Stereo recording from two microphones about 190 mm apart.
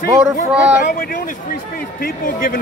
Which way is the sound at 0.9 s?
45° left (ahead or behind).